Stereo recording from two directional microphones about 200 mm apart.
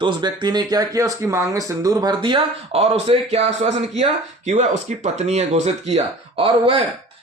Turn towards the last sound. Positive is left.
turn(degrees=-25)  # may be behind; listen again after turning